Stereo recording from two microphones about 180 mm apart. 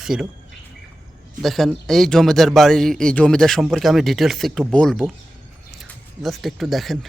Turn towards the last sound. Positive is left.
turn(degrees=0)  # may be behind; listen again after turning